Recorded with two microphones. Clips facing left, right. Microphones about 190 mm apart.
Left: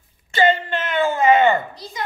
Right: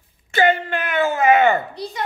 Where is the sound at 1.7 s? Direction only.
65° right (ahead or behind).